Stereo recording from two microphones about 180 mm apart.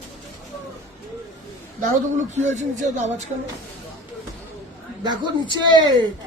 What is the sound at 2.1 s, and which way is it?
Speech, 40° right (ahead or behind).